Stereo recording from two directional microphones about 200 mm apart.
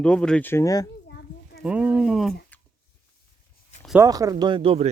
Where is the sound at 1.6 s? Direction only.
5° right (ahead or behind).